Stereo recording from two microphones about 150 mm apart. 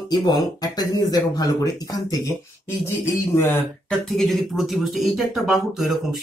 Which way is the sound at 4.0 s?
Centre (ahead or behind).